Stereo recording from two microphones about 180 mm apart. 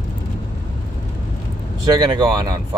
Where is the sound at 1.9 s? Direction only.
20° right (ahead or behind).